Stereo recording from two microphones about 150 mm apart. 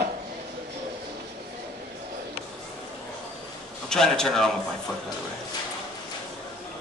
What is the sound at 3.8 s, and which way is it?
Speech, 5° left (ahead or behind).